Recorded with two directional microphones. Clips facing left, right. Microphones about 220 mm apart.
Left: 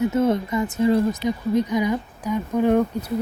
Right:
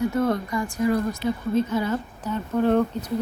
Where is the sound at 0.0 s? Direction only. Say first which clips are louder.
Left 3 dB; 20° left (ahead or behind).